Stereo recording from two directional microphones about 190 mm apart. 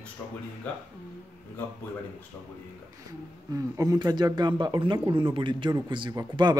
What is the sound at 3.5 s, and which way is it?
Speech, 20° right (ahead or behind).